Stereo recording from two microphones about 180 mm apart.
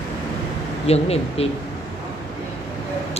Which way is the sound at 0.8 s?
35° left (ahead or behind).